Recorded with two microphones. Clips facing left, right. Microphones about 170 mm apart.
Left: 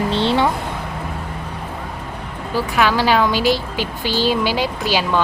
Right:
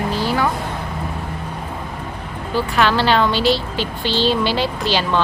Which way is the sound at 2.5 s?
5° left (ahead or behind).